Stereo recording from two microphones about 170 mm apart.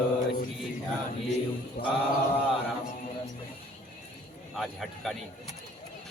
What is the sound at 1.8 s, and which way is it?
Mantra, 60° left (ahead or behind).